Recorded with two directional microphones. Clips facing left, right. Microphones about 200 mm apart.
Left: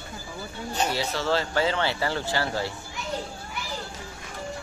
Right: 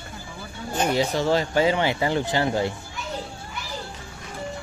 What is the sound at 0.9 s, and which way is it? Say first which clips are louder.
Speech: right 7 dB; 15° right (ahead or behind).